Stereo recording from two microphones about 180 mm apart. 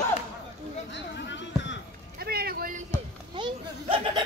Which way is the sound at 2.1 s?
60° right (ahead or behind).